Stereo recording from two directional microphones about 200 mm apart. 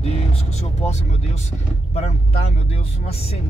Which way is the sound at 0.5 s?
35° left (ahead or behind).